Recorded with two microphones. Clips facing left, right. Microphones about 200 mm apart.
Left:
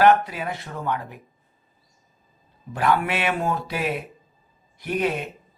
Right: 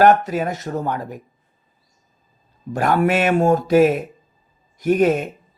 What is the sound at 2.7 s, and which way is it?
Speech, 45° right (ahead or behind).